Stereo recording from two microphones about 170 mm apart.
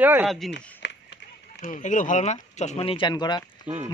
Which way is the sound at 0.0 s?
10° right (ahead or behind).